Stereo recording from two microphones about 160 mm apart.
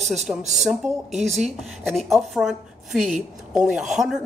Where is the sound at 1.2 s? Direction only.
Centre (ahead or behind).